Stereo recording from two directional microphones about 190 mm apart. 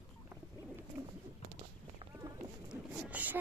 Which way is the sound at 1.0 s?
20° right (ahead or behind).